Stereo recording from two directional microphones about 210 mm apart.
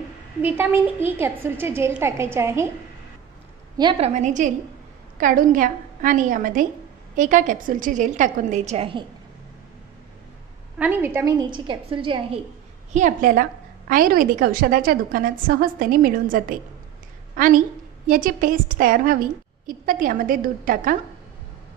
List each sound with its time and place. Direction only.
0.4 s a woman's voice: 10° right (ahead or behind)
3.7 s a woman's voice: 20° right (ahead or behind)
4.1 s a woman's voice: 35° right (ahead or behind)
10.8 s a woman's voice: 10° right (ahead or behind); by 12.4 s 25° right (ahead or behind)
12.9 s a woman's voice: 40° right (ahead or behind)
18.0 s a woman's voice: 40° right (ahead or behind)